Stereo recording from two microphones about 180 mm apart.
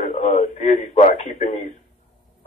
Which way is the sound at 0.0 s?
40° left (ahead or behind).